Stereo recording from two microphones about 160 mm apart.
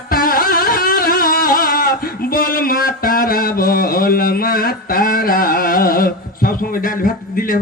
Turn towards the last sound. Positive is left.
turn(degrees=60)  # may be behind; listen again after turning